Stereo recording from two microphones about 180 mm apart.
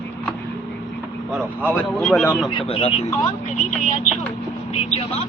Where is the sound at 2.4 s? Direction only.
30° left (ahead or behind).